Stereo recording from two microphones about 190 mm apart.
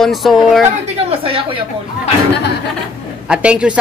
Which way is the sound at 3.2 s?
5° right (ahead or behind).